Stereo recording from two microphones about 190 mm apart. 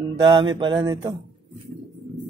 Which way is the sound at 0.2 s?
25° right (ahead or behind).